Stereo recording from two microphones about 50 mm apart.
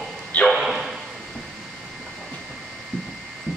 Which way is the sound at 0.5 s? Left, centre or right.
Centre.